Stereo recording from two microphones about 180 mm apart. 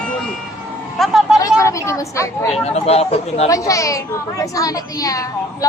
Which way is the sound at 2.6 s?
35° left (ahead or behind).